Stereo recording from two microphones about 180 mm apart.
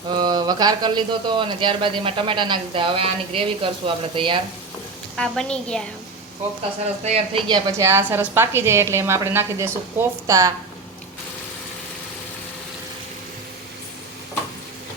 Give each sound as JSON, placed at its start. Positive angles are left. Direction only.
{"t": 0.1, "sound": "speech", "side_deg": -25}
{"t": 5.1, "sound": "a woman's voice", "side_deg": 5}
{"t": 7.0, "sound": "speech", "side_deg": -35}
{"t": 7.4, "sound": "a woman's voice", "side_deg": -20}